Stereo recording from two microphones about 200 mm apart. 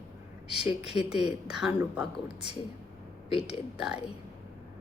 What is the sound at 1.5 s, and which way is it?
Speech, 5° right (ahead or behind).